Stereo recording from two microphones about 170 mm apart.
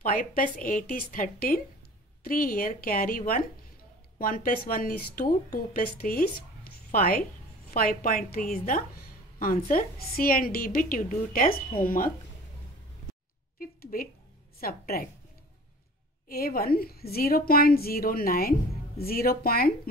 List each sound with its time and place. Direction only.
0.0 s a woman's voice: 55° left (ahead or behind)
13.6 s a sound: 60° left (ahead or behind)
14.6 s a woman's voice: 60° left (ahead or behind)
16.3 s a woman's voice: 60° left (ahead or behind)